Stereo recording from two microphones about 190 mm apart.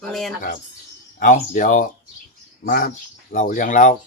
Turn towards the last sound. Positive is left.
turn(degrees=45)  # may be behind; listen again after turning